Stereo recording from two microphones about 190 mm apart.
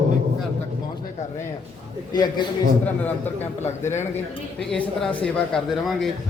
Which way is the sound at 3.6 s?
15° left (ahead or behind).